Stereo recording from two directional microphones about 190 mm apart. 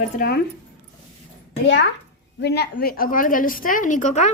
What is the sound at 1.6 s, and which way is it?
A child's voice, 65° left (ahead or behind).